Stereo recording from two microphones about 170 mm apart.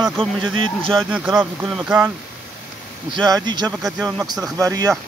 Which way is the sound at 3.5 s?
25° right (ahead or behind).